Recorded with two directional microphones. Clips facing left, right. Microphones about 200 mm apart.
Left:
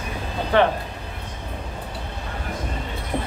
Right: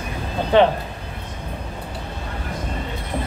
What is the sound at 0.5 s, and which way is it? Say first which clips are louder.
Speech: right 4 dB; 20° right (ahead or behind).